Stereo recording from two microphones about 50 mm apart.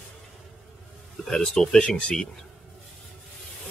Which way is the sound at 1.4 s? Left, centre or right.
Centre.